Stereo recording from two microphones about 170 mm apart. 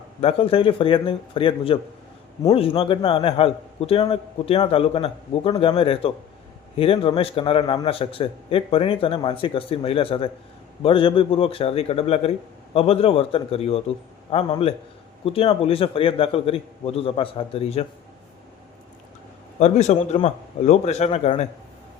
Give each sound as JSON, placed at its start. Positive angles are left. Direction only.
{"t": 0.2, "sound": "a man's voice", "side_deg": 35}
{"t": 19.5, "sound": "a man's voice", "side_deg": 40}